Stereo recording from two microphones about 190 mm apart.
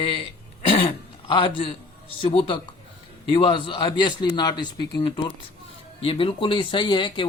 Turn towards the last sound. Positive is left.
turn(degrees=25)  # may be behind; listen again after turning